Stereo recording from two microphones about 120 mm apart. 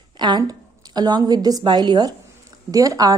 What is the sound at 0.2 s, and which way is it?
A woman's voice, 35° right (ahead or behind).